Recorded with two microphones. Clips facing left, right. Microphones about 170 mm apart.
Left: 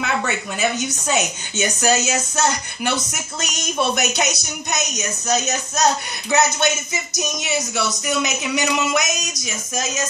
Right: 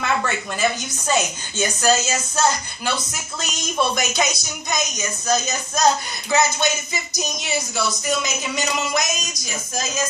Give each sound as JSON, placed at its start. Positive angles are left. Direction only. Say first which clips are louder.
{"t": 0.8, "sound": "speech", "louder": "even", "side_deg": 70}